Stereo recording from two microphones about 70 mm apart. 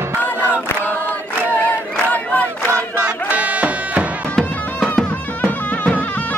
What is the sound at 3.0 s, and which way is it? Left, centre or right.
Music, right.